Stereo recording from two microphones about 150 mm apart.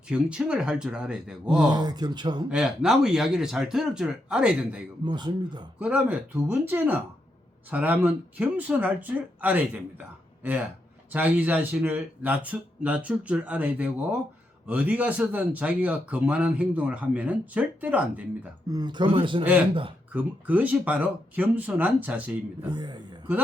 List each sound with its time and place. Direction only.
0.1 s speech: 5° right (ahead or behind)
1.5 s speech: 30° right (ahead or behind)
2.5 s speech: 5° right (ahead or behind)
5.0 s speech: 30° right (ahead or behind)
5.8 s a man's voice: 10° right (ahead or behind)
11.1 s a man's voice: 10° right (ahead or behind)
18.7 s a man's voice: 30° right (ahead or behind)
20.1 s a man's voice: 10° right (ahead or behind)
22.7 s speech: 30° right (ahead or behind)